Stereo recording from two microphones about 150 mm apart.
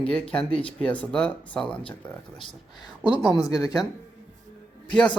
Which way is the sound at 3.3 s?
25° left (ahead or behind).